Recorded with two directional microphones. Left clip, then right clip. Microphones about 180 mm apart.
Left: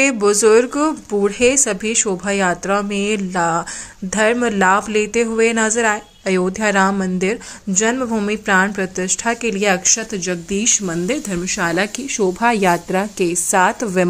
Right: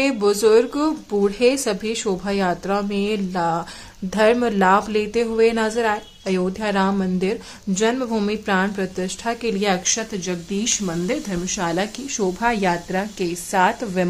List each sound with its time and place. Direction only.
0.0 s speech: 15° left (ahead or behind)